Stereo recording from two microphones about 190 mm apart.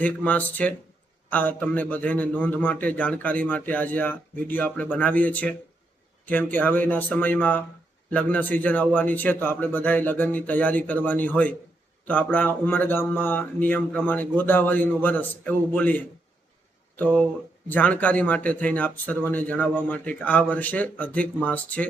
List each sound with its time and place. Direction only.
0.0 s a man's voice: 10° left (ahead or behind)